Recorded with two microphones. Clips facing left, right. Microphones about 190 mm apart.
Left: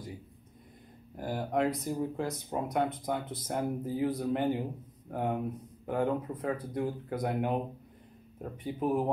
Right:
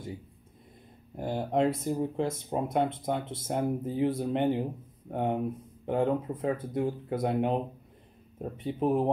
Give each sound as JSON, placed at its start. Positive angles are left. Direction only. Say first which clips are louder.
{"t": 1.1, "sound": "speech", "louder": "right 3 dB", "side_deg": -25}